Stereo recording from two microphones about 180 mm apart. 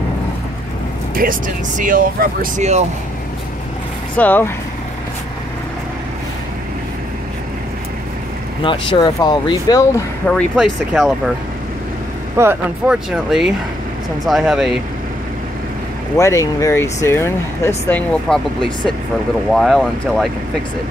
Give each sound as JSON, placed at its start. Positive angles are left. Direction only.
{"t": 1.1, "sound": "speech", "side_deg": -50}
{"t": 4.2, "sound": "speech", "side_deg": 10}
{"t": 8.6, "sound": "speech", "side_deg": 25}
{"t": 10.2, "sound": "speech", "side_deg": 5}
{"t": 12.4, "sound": "speech", "side_deg": -10}
{"t": 16.2, "sound": "speech", "side_deg": 15}
{"t": 19.5, "sound": "speech", "side_deg": 0}